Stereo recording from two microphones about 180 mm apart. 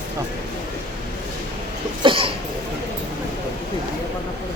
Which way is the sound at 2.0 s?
30° right (ahead or behind).